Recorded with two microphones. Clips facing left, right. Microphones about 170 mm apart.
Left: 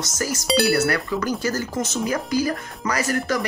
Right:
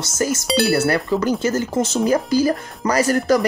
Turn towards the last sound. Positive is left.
turn(degrees=-35)  # may be behind; listen again after turning